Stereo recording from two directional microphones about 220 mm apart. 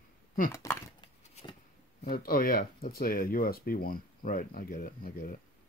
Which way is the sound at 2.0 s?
40° left (ahead or behind).